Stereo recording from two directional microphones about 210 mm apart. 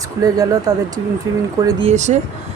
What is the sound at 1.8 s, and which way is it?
Speech, 35° right (ahead or behind).